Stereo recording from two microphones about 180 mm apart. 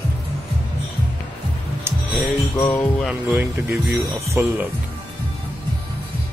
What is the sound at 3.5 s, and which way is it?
Speech, 15° right (ahead or behind).